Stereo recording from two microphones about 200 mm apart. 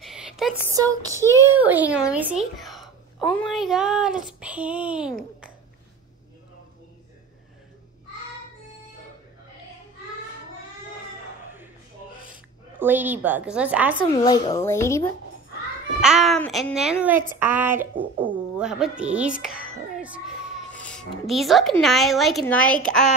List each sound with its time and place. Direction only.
0.0 s a sound: centre (ahead or behind)
0.7 s a woman's voice: 15° right (ahead or behind)
12.3 s a woman's voice: 10° right (ahead or behind)
14.1 s speech: 20° left (ahead or behind)
16.0 s a woman's voice: centre (ahead or behind)
20.8 s a woman's voice: centre (ahead or behind)